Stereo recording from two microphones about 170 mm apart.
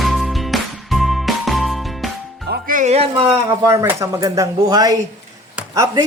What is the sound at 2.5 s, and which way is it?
Music, 50° right (ahead or behind).